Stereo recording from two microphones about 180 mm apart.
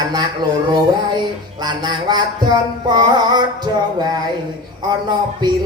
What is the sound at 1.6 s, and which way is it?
Music, 25° right (ahead or behind).